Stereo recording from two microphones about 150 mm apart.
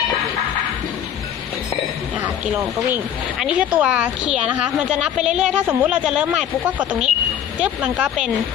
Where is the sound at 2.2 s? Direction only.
15° right (ahead or behind).